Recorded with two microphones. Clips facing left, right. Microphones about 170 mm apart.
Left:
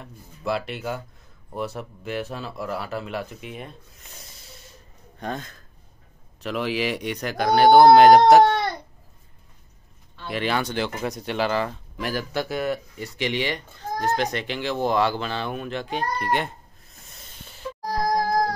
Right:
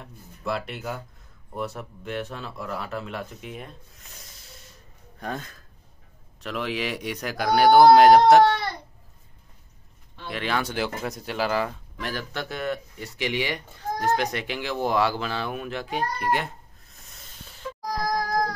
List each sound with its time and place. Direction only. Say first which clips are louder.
0.0 s speech: left 2 dB; centre (ahead or behind)
6.4 s speech: left 4 dB; 5° left (ahead or behind)
10.2 s speech: left 2 dB; centre (ahead or behind)
12.0 s speech: left 5 dB; 10° left (ahead or behind)
13.2 s speech: left 1 dB; 5° right (ahead or behind)
17.1 s a sound: left 1 dB; centre (ahead or behind)
17.8 s child singing: left 4 dB; 30° left (ahead or behind)